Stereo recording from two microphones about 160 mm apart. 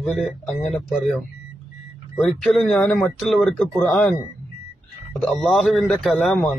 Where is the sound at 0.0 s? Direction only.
Centre (ahead or behind).